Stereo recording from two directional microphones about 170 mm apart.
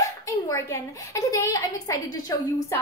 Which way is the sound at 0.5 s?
20° left (ahead or behind).